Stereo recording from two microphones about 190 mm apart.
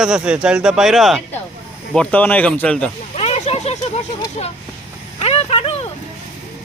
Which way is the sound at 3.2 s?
35° left (ahead or behind).